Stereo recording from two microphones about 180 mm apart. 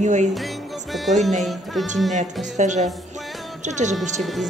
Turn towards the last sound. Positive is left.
turn(degrees=0)  # may be behind; listen again after turning